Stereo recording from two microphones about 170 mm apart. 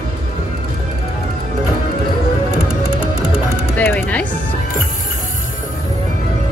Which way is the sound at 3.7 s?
10° left (ahead or behind).